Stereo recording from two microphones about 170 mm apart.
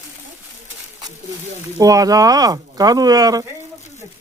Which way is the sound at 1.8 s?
20° right (ahead or behind).